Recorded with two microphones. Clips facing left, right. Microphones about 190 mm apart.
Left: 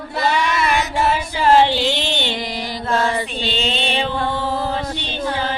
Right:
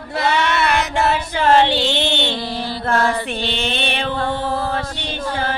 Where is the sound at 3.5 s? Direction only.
60° right (ahead or behind).